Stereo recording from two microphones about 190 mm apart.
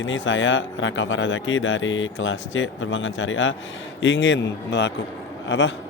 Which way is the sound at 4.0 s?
70° left (ahead or behind).